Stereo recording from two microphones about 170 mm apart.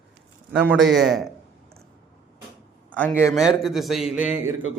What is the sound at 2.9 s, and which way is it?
Speech, 10° left (ahead or behind).